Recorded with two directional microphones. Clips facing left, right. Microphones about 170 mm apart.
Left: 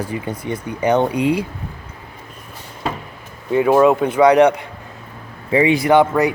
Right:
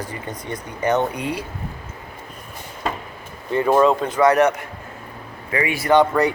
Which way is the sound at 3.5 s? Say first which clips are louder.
Left 3 dB; 10° left (ahead or behind).